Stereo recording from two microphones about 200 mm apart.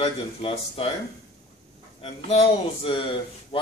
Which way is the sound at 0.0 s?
30° left (ahead or behind).